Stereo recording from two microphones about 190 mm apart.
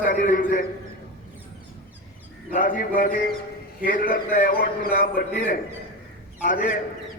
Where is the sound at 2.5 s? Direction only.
45° left (ahead or behind).